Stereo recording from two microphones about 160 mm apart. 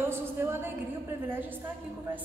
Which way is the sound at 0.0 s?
15° right (ahead or behind).